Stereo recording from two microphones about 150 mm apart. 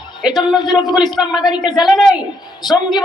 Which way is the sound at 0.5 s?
30° left (ahead or behind).